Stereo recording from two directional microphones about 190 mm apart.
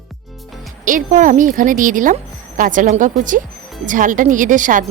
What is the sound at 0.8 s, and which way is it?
A woman's voice, 45° right (ahead or behind).